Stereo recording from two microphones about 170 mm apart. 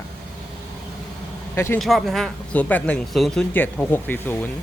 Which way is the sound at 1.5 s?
15° left (ahead or behind).